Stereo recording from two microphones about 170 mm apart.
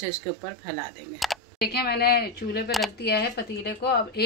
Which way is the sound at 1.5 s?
70° left (ahead or behind).